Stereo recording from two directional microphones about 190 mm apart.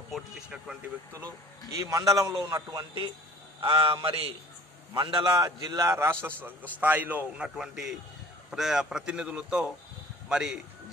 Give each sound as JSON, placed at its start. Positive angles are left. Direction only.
{"t": 0.1, "sound": "speech", "side_deg": -5}
{"t": 1.7, "sound": "a man's voice", "side_deg": -15}